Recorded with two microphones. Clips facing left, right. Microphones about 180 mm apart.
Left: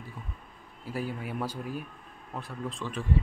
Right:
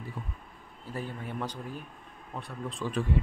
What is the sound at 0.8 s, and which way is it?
Speech, 10° left (ahead or behind).